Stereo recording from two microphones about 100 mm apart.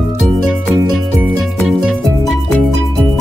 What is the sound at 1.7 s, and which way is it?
Music, centre (ahead or behind).